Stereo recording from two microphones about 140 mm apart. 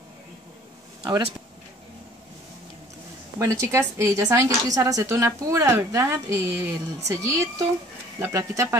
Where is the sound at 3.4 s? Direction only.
20° right (ahead or behind).